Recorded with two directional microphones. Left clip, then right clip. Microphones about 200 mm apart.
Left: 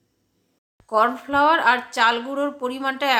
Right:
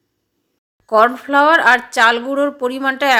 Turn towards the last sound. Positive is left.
turn(degrees=-25)  # may be behind; listen again after turning